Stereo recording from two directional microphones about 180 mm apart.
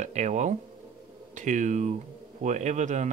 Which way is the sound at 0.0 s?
40° right (ahead or behind).